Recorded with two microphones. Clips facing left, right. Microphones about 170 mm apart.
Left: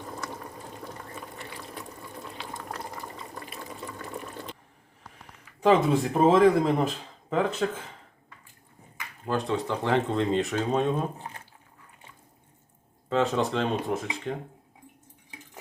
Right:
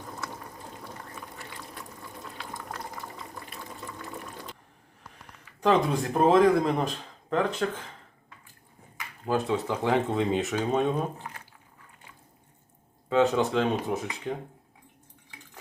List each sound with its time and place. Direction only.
2.4 s boiling: centre (ahead or behind)
5.5 s speech: 5° left (ahead or behind)
9.3 s speech: 5° right (ahead or behind)
11.2 s drip: 25° left (ahead or behind)
13.1 s speech: centre (ahead or behind)